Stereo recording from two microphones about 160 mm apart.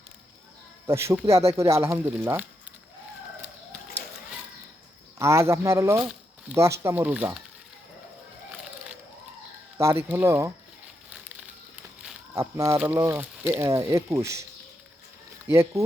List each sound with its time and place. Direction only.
0.9 s speech: 15° right (ahead or behind)
5.2 s speech: 15° right (ahead or behind)
6.0 s a sound: 5° right (ahead or behind)
6.6 s speech: 15° right (ahead or behind)
9.7 s speech: 15° right (ahead or behind)
12.3 s speech: 15° right (ahead or behind)
15.4 s speech: 15° right (ahead or behind)